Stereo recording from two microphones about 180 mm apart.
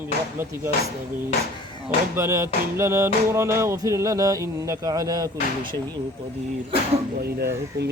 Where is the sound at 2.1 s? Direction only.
15° right (ahead or behind).